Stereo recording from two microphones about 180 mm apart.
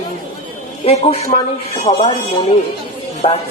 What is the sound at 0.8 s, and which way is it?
Speech, 35° left (ahead or behind).